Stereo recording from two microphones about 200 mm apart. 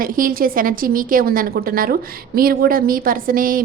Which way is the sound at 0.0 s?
45° right (ahead or behind).